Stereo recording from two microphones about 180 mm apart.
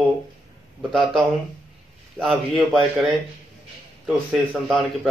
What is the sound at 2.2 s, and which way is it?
Speech, centre (ahead or behind).